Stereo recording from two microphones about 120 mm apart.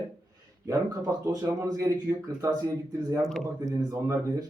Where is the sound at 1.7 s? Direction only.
25° right (ahead or behind).